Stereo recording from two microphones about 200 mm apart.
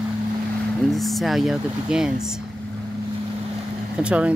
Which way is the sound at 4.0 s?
5° right (ahead or behind).